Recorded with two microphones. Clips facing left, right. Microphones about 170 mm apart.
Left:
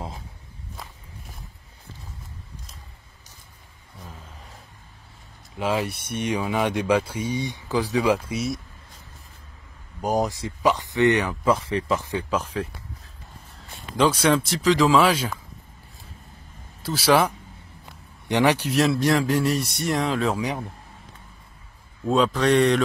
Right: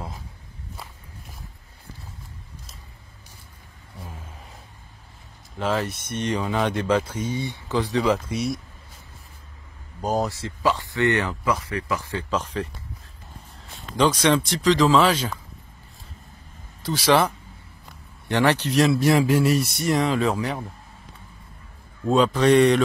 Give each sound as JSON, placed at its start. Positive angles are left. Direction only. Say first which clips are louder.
{"t": 5.6, "sound": "speech", "louder": "even", "side_deg": 10}
{"t": 10.0, "sound": "speech", "louder": "left 1 dB", "side_deg": 15}
{"t": 16.8, "sound": "speech", "louder": "even", "side_deg": 5}
{"t": 18.3, "sound": "speech", "louder": "even", "side_deg": 15}
{"t": 20.3, "sound": "speech", "louder": "even", "side_deg": 15}
{"t": 22.1, "sound": "speech", "louder": "right 2 dB", "side_deg": 0}